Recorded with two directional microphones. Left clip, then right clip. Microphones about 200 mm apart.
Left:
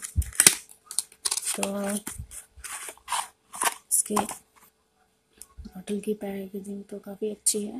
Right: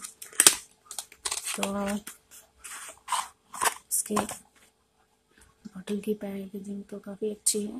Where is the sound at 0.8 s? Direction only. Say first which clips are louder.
Left 4 dB; 10° left (ahead or behind).